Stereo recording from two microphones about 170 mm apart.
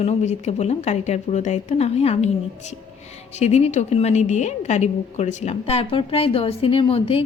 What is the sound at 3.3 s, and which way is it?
A woman's voice, 40° left (ahead or behind).